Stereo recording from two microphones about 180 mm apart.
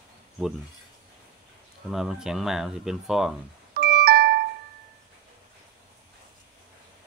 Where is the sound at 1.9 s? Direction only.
Centre (ahead or behind).